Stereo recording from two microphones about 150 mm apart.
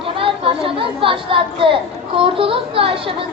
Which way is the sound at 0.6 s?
35° right (ahead or behind).